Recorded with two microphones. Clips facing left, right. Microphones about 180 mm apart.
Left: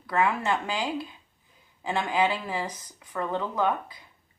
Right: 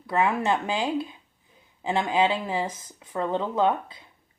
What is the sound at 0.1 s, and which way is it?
Speech, 20° right (ahead or behind).